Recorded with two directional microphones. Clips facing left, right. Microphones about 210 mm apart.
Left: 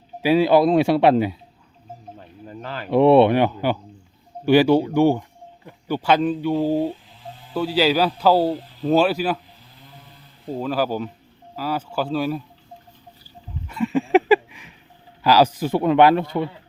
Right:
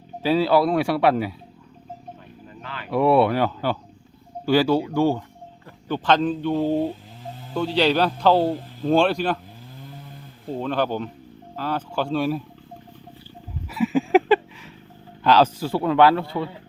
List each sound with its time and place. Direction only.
0.2 s speech: 15° left (ahead or behind)
2.5 s a sound: 40° left (ahead or behind)
2.9 s a man's voice: 25° left (ahead or behind); by 9.4 s 5° left (ahead or behind)
10.5 s a man's voice: 5° left (ahead or behind)
13.7 s a sound: 5° right (ahead or behind)
15.2 s speech: 10° left (ahead or behind)